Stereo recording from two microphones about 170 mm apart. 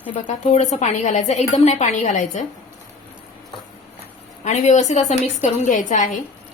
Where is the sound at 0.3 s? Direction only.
40° left (ahead or behind).